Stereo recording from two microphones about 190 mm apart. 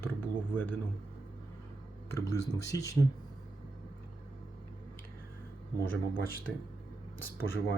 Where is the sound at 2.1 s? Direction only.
15° left (ahead or behind).